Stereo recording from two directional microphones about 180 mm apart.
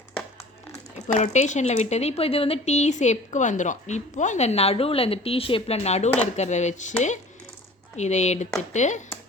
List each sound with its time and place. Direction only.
1.0 s speech: 40° left (ahead or behind)
7.9 s speech: 40° left (ahead or behind)